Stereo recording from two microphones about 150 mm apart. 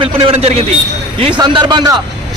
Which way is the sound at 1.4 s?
30° right (ahead or behind).